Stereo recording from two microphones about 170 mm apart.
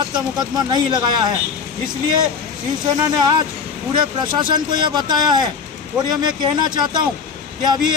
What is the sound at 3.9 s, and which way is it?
Speech, 25° right (ahead or behind).